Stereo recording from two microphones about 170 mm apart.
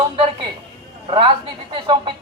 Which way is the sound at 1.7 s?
30° right (ahead or behind).